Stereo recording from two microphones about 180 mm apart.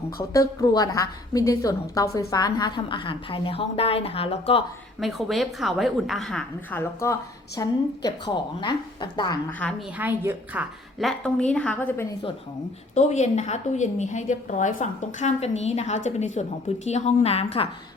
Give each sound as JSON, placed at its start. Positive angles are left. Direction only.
{"t": 0.2, "sound": "a woman's voice", "side_deg": 20}
{"t": 4.9, "sound": "a woman's voice", "side_deg": 0}
{"t": 9.5, "sound": "a woman's voice", "side_deg": 10}
{"t": 10.0, "sound": "a woman's voice", "side_deg": -10}
{"t": 11.2, "sound": "a woman's voice", "side_deg": 5}
{"t": 12.9, "sound": "a woman's voice", "side_deg": 40}